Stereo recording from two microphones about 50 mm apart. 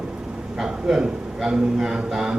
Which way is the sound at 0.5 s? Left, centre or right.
Centre.